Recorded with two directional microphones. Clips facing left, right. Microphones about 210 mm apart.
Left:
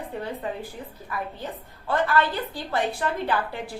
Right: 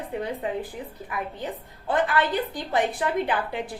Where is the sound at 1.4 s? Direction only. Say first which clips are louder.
Right 2 dB; 15° right (ahead or behind).